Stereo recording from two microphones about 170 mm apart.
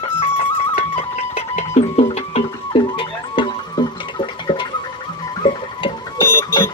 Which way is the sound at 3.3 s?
25° left (ahead or behind).